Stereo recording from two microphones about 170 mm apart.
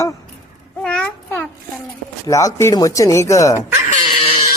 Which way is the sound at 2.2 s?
20° left (ahead or behind).